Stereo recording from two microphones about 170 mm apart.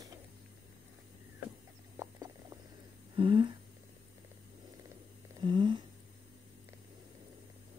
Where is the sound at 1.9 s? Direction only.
20° right (ahead or behind).